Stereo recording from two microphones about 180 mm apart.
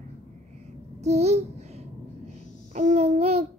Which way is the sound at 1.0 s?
35° right (ahead or behind).